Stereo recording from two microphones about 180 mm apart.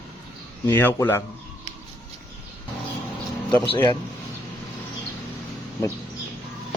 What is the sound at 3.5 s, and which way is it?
Speech, 10° left (ahead or behind).